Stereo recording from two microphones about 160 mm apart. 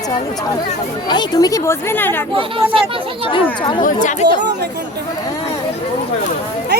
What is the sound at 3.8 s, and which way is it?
Speech, 55° left (ahead or behind).